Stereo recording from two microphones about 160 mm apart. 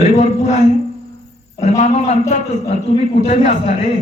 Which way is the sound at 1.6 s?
45° left (ahead or behind).